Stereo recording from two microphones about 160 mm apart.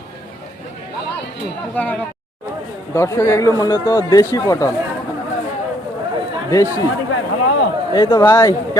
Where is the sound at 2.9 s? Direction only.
15° left (ahead or behind).